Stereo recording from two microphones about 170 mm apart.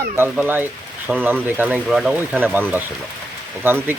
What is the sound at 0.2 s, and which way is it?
Speech, 10° right (ahead or behind).